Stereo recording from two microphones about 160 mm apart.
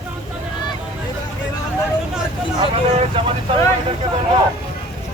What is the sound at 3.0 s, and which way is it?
Speech, 35° right (ahead or behind).